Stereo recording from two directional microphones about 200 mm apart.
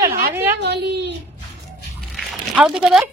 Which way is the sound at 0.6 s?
60° right (ahead or behind).